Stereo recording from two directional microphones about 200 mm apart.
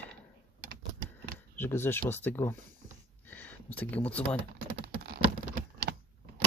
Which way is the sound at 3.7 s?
5° left (ahead or behind).